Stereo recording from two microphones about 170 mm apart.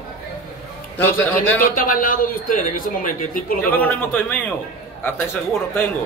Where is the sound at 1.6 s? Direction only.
55° left (ahead or behind).